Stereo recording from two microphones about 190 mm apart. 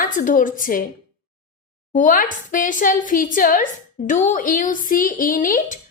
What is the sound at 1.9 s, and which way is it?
A woman's voice, 45° left (ahead or behind).